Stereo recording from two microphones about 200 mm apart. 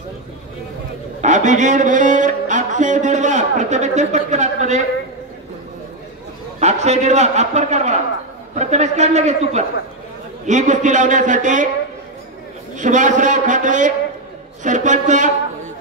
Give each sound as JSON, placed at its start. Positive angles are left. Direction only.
{"t": 1.2, "sound": "music", "side_deg": -40}
{"t": 6.6, "sound": "a man's voice", "side_deg": -35}
{"t": 12.7, "sound": "a man's voice", "side_deg": -40}